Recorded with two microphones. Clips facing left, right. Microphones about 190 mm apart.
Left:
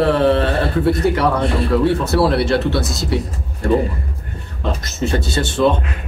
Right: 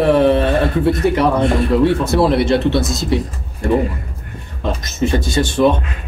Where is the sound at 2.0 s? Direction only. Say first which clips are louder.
Right 2 dB; 20° right (ahead or behind).